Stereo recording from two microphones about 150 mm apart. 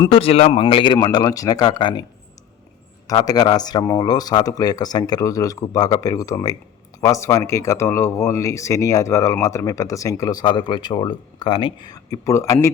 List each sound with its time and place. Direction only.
0.1 s speech: 40° left (ahead or behind)
3.1 s speech: 25° left (ahead or behind)